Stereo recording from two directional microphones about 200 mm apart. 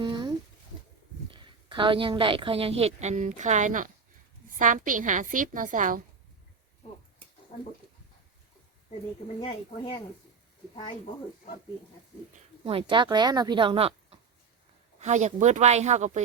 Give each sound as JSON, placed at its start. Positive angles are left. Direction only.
{"t": 0.0, "sound": "a sound", "side_deg": -20}
{"t": 1.3, "sound": "a woman's voice", "side_deg": -25}
{"t": 9.4, "sound": "speech", "side_deg": 30}
{"t": 12.6, "sound": "a woman's voice", "side_deg": -25}